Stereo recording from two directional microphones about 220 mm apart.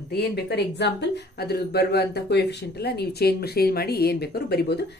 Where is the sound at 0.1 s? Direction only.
50° left (ahead or behind).